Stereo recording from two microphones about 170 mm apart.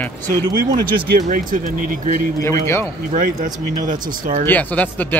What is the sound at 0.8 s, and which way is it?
Speech, 55° right (ahead or behind).